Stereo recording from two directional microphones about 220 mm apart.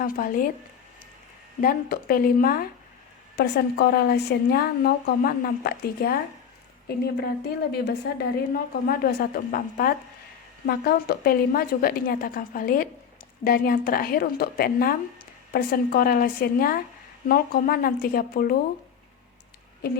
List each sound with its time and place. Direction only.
0.0 s a woman's voice: 40° left (ahead or behind)
1.6 s a woman's voice: 40° left (ahead or behind)